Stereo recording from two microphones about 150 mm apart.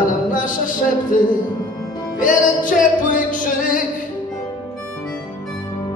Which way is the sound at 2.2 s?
60° left (ahead or behind).